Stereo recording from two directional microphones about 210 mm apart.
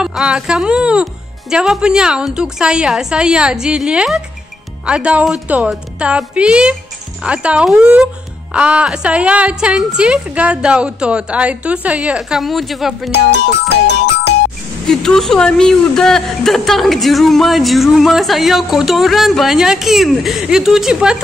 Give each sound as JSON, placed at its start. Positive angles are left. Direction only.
{"t": 0.0, "sound": "speech", "side_deg": -5}
{"t": 14.9, "sound": "speech", "side_deg": 0}